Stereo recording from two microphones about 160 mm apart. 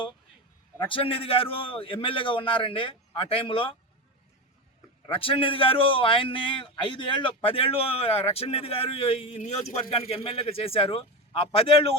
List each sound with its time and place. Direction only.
0.9 s a man's voice: 35° left (ahead or behind)
5.0 s a man's voice: 35° left (ahead or behind)